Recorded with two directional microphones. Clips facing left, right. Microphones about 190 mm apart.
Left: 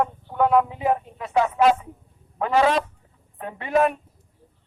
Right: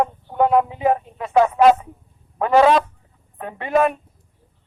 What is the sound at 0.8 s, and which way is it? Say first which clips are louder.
Speech: right 4 dB; 50° right (ahead or behind).